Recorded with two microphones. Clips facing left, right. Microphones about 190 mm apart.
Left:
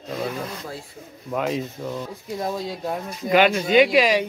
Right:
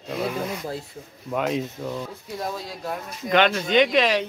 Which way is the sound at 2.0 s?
20° left (ahead or behind).